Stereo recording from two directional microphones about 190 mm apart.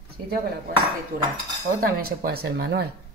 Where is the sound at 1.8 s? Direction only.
50° right (ahead or behind).